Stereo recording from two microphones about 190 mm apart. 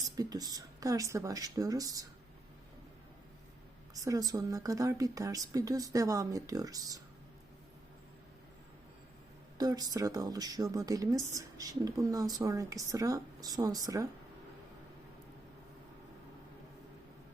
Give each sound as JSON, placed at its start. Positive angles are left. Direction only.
{"t": 0.2, "sound": "speech", "side_deg": -20}
{"t": 4.0, "sound": "speech", "side_deg": -20}
{"t": 9.6, "sound": "speech", "side_deg": -20}